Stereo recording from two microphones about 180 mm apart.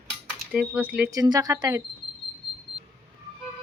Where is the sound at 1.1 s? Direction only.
20° right (ahead or behind).